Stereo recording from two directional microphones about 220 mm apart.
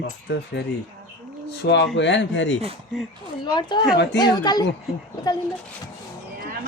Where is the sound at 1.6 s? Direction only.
50° left (ahead or behind).